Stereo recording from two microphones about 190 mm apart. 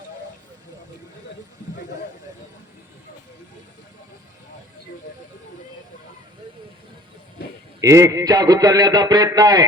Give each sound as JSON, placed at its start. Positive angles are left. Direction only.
{"t": 7.8, "sound": "a man's voice", "side_deg": -15}